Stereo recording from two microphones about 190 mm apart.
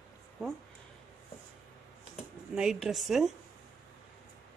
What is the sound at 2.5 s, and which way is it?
Speech, 5° right (ahead or behind).